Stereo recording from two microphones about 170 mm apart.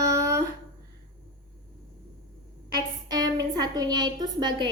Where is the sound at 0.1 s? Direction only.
20° right (ahead or behind).